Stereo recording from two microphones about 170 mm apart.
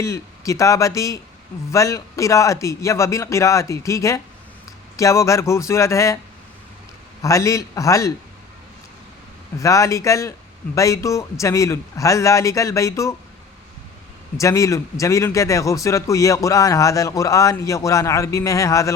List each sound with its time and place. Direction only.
0.0 s a man's voice: 20° left (ahead or behind)
7.2 s a man's voice: 20° left (ahead or behind)
9.6 s a man's voice: 20° left (ahead or behind)
14.3 s a man's voice: 20° left (ahead or behind)